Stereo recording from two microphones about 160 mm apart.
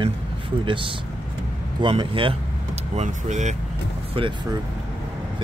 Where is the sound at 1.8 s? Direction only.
30° right (ahead or behind); by 3.5 s 45° right (ahead or behind).